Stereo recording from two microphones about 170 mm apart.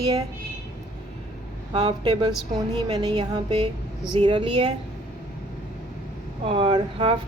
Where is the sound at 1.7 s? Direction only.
30° right (ahead or behind).